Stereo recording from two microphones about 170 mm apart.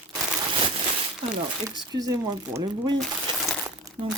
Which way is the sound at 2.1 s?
20° right (ahead or behind).